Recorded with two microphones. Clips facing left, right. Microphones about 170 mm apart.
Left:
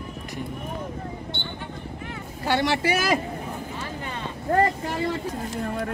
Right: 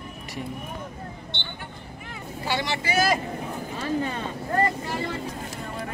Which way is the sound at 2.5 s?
55° left (ahead or behind).